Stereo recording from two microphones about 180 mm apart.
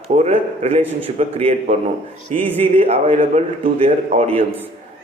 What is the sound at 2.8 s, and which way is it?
A man's voice, 35° right (ahead or behind).